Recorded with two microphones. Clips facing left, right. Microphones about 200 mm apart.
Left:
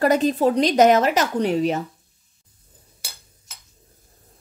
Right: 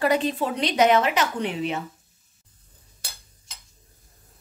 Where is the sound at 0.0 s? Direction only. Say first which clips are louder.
Left 5 dB; 45° left (ahead or behind).